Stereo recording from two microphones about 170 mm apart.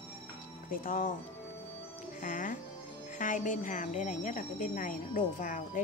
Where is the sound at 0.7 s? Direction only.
55° left (ahead or behind).